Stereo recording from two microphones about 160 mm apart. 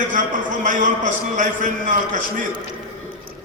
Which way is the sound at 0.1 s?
55° right (ahead or behind).